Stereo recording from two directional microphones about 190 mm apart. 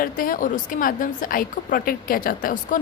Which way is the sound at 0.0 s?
50° left (ahead or behind).